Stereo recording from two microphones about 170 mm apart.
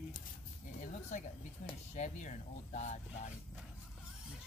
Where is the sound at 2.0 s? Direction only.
45° left (ahead or behind).